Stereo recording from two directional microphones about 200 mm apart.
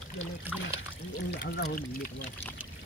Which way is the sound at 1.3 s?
50° left (ahead or behind).